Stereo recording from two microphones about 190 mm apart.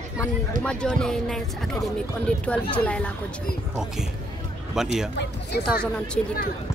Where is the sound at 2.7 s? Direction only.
5° left (ahead or behind).